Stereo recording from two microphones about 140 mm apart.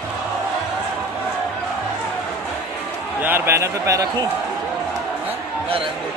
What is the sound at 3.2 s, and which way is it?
Speech, 15° right (ahead or behind).